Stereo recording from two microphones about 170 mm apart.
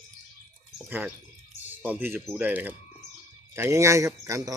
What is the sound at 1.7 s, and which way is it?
Speech, 10° right (ahead or behind).